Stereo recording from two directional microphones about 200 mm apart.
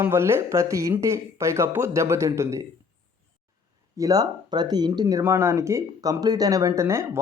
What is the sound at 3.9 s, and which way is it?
Speech, 20° right (ahead or behind).